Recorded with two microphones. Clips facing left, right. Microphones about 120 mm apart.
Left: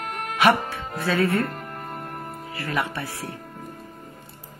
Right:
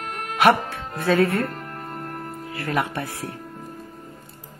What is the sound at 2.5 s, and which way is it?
Speech, 50° right (ahead or behind).